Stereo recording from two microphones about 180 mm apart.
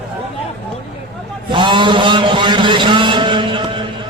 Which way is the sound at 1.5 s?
25° right (ahead or behind).